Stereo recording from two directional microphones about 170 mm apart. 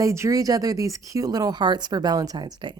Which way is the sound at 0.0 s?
20° right (ahead or behind).